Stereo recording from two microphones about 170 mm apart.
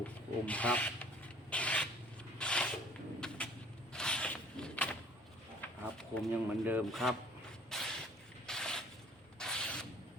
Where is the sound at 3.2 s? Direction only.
5° left (ahead or behind).